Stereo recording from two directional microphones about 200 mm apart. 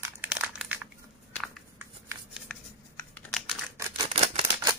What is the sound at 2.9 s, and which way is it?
Computer keyboard, 5° left (ahead or behind).